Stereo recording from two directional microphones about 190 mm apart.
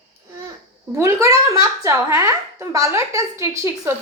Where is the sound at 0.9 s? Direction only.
15° right (ahead or behind).